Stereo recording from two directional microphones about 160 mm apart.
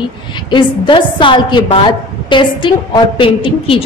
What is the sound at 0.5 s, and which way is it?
A woman's voice, 30° left (ahead or behind).